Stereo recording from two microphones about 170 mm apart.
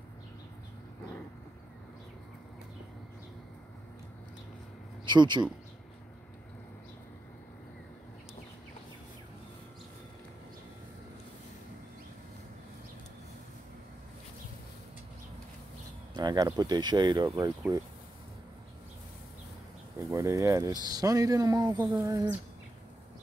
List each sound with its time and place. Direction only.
5.0 s speech: 25° right (ahead or behind)
16.2 s speech: 25° right (ahead or behind)
20.0 s speech: 15° right (ahead or behind)